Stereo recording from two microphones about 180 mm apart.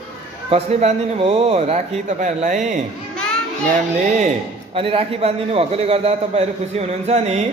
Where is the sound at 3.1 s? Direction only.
5° left (ahead or behind).